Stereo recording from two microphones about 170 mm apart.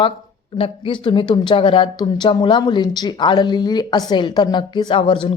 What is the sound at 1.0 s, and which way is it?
A woman's voice, 25° left (ahead or behind).